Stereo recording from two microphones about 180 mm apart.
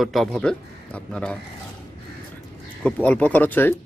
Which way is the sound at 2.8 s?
5° left (ahead or behind).